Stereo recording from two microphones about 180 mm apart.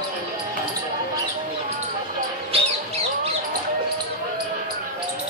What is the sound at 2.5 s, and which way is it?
Music, 35° right (ahead or behind).